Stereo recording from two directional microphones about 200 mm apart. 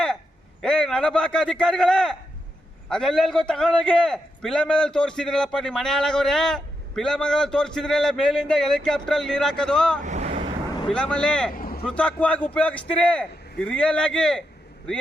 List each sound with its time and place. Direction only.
0.6 s a man's voice: 5° left (ahead or behind)
10.0 s vehicle: 35° right (ahead or behind)
10.8 s a man's voice: 5° left (ahead or behind)
11.5 s a sound: 45° left (ahead or behind)
11.9 s a man's voice: 5° left (ahead or behind)